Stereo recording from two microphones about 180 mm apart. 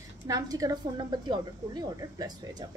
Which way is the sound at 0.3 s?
20° right (ahead or behind).